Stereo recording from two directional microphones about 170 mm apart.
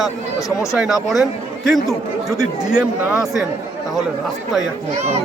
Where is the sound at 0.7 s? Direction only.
Centre (ahead or behind).